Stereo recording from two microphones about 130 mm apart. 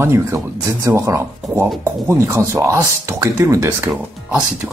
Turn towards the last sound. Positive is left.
turn(degrees=-20)  # may be behind; listen again after turning